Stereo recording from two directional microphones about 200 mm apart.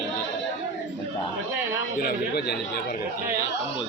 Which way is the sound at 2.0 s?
50° left (ahead or behind).